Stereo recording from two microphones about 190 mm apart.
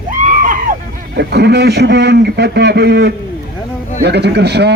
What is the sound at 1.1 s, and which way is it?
A man's voice, 60° right (ahead or behind).